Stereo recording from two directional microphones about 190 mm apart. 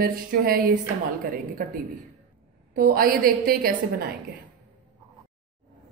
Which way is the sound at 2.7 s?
50° right (ahead or behind).